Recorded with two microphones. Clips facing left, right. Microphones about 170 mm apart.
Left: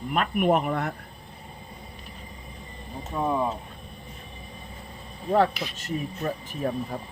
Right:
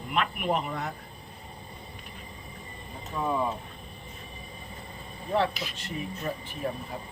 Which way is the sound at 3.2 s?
25° left (ahead or behind).